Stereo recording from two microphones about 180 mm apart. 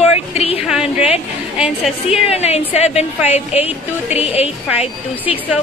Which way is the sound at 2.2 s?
35° left (ahead or behind).